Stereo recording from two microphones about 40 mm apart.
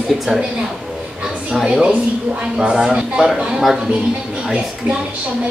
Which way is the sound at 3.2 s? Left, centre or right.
Centre.